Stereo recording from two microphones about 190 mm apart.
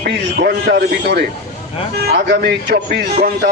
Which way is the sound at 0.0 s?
55° right (ahead or behind).